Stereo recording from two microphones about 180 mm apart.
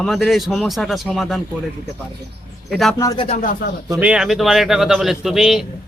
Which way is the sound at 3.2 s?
40° left (ahead or behind).